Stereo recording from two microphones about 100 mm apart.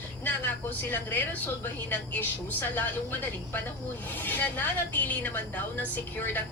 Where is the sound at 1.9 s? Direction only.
15° left (ahead or behind).